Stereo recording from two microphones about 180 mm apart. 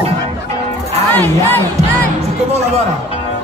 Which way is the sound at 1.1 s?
10° left (ahead or behind).